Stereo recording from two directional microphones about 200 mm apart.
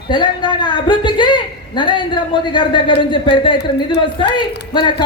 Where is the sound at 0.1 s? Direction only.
20° left (ahead or behind).